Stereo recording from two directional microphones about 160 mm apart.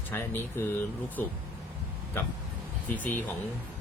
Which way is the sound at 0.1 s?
15° left (ahead or behind).